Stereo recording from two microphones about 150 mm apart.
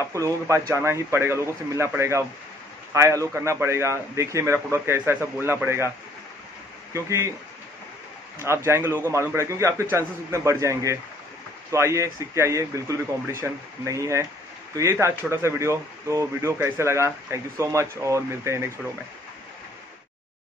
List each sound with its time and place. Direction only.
0.1 s a man's voice: 20° right (ahead or behind)
6.9 s speech: 20° right (ahead or behind)
8.4 s a man's voice: 15° right (ahead or behind)